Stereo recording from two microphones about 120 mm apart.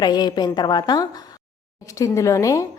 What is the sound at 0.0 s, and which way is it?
A woman's voice, 35° left (ahead or behind).